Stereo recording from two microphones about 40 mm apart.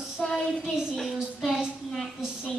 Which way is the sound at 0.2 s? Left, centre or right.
Left.